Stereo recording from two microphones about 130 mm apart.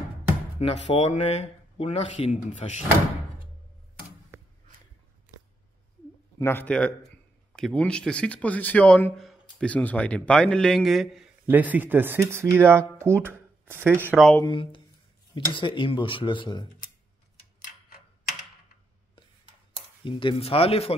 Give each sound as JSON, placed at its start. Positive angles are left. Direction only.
{"t": 0.6, "sound": "speech", "side_deg": 55}
{"t": 6.3, "sound": "a man's voice", "side_deg": 15}
{"t": 11.4, "sound": "a man's voice", "side_deg": -15}
{"t": 14.4, "sound": "speech", "side_deg": 40}
{"t": 20.1, "sound": "speech", "side_deg": 40}